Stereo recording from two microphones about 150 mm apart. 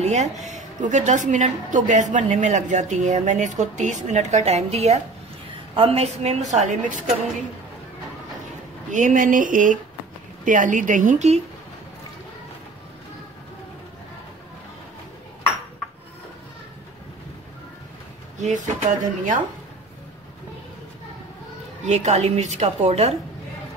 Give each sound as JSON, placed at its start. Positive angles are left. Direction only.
{"t": 0.0, "sound": "a woman's voice", "side_deg": -50}
{"t": 8.9, "sound": "a woman's voice", "side_deg": -60}
{"t": 18.4, "sound": "a woman's voice", "side_deg": -50}
{"t": 21.8, "sound": "a woman's voice", "side_deg": -50}